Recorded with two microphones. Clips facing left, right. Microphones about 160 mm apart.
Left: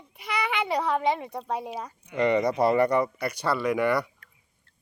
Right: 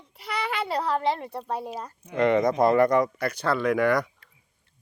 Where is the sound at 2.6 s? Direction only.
10° left (ahead or behind).